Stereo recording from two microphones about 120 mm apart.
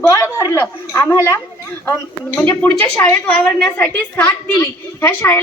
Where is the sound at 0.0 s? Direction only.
20° left (ahead or behind).